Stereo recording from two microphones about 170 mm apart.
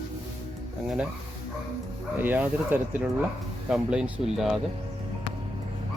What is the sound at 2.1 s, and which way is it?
Speech, 10° right (ahead or behind).